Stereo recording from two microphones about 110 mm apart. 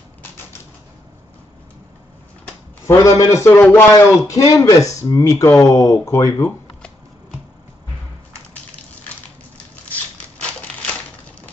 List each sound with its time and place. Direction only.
2.9 s speech: 30° left (ahead or behind)
4.3 s speech: 30° left (ahead or behind)